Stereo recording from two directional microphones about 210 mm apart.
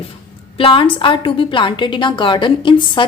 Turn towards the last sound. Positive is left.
turn(degrees=25)  # may be behind; listen again after turning